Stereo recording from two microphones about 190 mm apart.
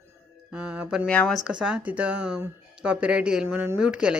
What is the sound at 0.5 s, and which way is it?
Speech, 5° right (ahead or behind).